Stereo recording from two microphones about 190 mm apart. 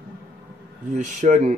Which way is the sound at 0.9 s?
40° right (ahead or behind).